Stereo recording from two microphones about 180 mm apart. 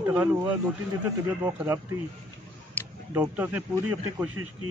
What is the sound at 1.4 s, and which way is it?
Speech, 15° right (ahead or behind).